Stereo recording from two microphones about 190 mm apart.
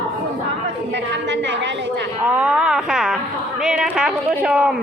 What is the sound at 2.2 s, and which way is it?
Speech, 10° right (ahead or behind).